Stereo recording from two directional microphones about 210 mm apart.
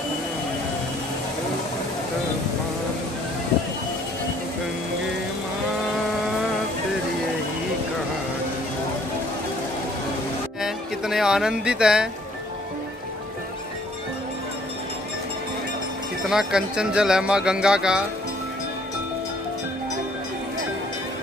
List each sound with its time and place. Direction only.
10.6 s music: centre (ahead or behind)
16.3 s speech: 5° right (ahead or behind)